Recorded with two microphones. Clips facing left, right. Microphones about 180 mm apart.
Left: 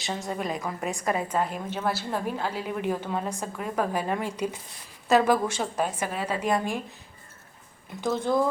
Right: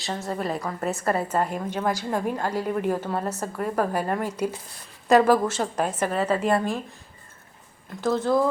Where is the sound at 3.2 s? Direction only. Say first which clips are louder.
Right 4 dB; 10° left (ahead or behind).